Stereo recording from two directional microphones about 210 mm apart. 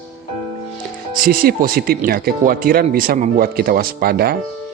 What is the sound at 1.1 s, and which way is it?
Speech, 45° right (ahead or behind).